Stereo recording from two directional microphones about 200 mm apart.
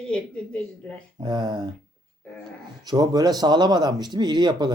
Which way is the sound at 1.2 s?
20° right (ahead or behind).